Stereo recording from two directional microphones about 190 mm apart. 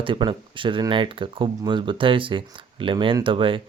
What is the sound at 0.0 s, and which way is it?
Speech, 25° right (ahead or behind).